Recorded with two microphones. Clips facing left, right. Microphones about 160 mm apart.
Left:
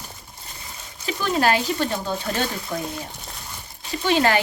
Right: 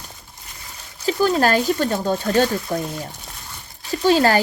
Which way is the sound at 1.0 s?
40° right (ahead or behind).